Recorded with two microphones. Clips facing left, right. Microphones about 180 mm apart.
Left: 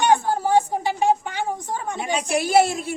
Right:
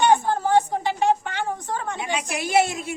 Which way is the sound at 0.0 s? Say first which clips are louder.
Even; 10° left (ahead or behind).